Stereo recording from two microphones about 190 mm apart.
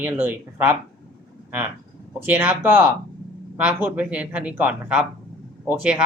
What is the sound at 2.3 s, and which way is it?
Speech, 10° right (ahead or behind).